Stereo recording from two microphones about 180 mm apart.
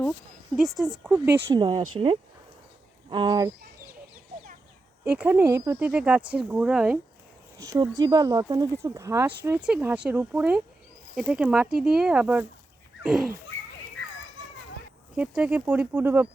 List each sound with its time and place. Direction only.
0.5 s speech: centre (ahead or behind)
1.5 s speech: 25° right (ahead or behind)
3.1 s speech: 25° right (ahead or behind)
5.1 s speech: 10° right (ahead or behind)
7.6 s speech: 20° right (ahead or behind); by 13.3 s centre (ahead or behind)
15.1 s speech: 5° right (ahead or behind)